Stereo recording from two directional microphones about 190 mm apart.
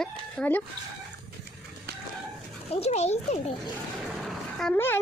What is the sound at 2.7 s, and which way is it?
Speech, 35° left (ahead or behind).